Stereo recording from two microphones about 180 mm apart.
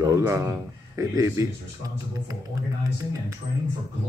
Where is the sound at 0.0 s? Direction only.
15° right (ahead or behind).